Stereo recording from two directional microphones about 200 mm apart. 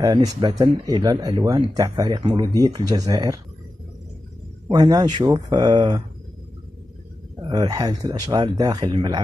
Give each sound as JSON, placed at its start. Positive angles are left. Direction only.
{"t": 0.0, "sound": "speech", "side_deg": -20}
{"t": 4.6, "sound": "speech", "side_deg": -20}
{"t": 7.4, "sound": "speech", "side_deg": -20}